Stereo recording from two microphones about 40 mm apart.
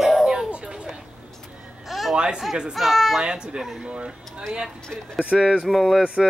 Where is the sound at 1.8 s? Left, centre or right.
Centre.